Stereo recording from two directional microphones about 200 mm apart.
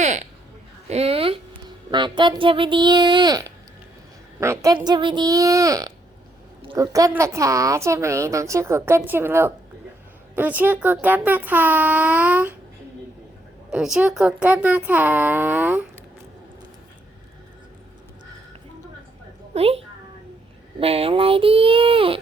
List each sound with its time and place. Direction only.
0.0 s a sound: 35° right (ahead or behind)
0.9 s a woman's voice: 30° right (ahead or behind); by 12.5 s 5° right (ahead or behind)
13.7 s a woman's voice: 5° right (ahead or behind)
19.5 s a child's voice: 30° right (ahead or behind)